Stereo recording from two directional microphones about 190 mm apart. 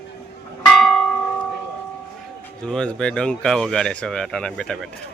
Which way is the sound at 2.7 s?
5° left (ahead or behind).